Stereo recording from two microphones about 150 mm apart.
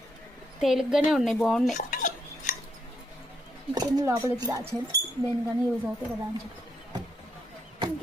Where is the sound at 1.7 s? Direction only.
55° left (ahead or behind).